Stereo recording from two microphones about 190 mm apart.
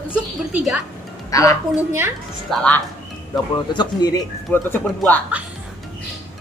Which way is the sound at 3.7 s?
20° left (ahead or behind).